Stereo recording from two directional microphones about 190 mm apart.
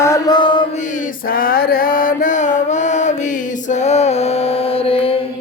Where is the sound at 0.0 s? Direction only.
20° left (ahead or behind).